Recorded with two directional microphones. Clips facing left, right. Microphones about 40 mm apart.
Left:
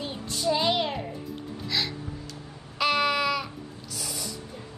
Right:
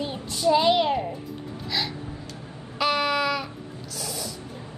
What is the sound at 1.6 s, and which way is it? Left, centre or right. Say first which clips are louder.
Gasp: right 1 dB; centre.